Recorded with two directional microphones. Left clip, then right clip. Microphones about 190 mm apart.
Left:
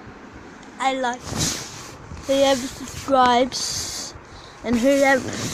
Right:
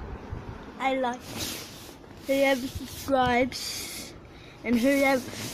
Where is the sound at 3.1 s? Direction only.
20° left (ahead or behind).